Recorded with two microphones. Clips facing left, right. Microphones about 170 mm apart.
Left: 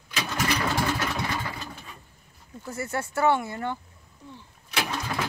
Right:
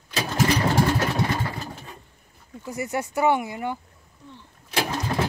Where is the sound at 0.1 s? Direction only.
35° right (ahead or behind).